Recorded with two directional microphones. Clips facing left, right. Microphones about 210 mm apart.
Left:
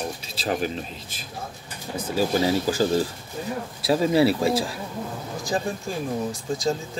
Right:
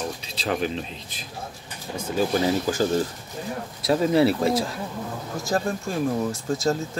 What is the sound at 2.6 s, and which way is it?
Speech, 35° left (ahead or behind).